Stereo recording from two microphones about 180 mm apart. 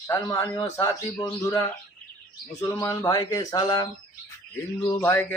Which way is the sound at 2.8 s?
20° left (ahead or behind).